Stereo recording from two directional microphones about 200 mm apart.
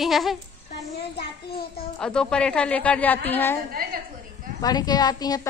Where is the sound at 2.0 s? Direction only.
5° left (ahead or behind).